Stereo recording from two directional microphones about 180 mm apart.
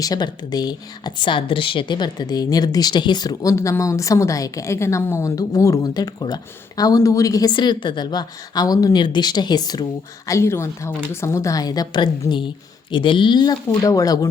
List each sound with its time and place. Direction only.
0.0 s a woman's voice: 20° left (ahead or behind)